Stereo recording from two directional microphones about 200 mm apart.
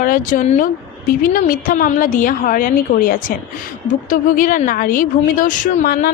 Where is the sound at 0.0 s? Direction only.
45° left (ahead or behind).